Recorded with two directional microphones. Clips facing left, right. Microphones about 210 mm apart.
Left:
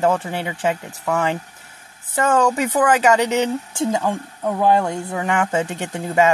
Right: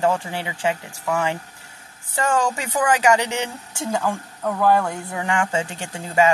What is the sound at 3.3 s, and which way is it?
Speech, 15° left (ahead or behind).